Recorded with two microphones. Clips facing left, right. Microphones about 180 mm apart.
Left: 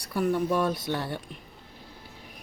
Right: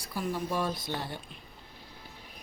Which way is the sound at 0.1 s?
60° left (ahead or behind).